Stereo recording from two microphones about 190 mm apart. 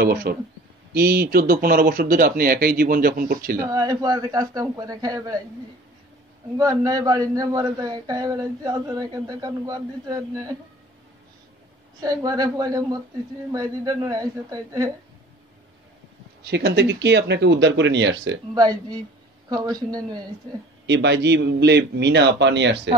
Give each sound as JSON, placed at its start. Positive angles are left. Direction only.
{"t": 0.0, "sound": "speech", "side_deg": -55}
{"t": 3.6, "sound": "a man's voice", "side_deg": -20}
{"t": 6.6, "sound": "a man's voice", "side_deg": -20}
{"t": 12.0, "sound": "a man's voice", "side_deg": -20}
{"t": 16.4, "sound": "speech", "side_deg": -60}
{"t": 18.5, "sound": "a man's voice", "side_deg": -20}
{"t": 20.8, "sound": "speech", "side_deg": -65}